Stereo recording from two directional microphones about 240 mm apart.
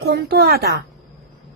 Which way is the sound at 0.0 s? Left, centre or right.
Right.